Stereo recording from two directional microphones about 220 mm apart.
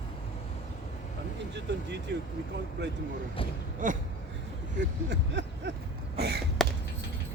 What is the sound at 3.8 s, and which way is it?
Speech, 35° right (ahead or behind).